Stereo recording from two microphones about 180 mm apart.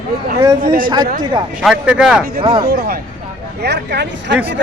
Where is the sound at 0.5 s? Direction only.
50° right (ahead or behind).